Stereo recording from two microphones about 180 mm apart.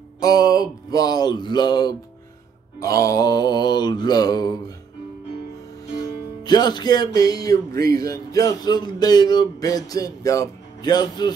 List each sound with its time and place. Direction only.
0.2 s speech: 20° left (ahead or behind)
5.9 s music: 25° left (ahead or behind)
7.8 s a man's voice: 55° right (ahead or behind)
8.1 s speech: 20° left (ahead or behind)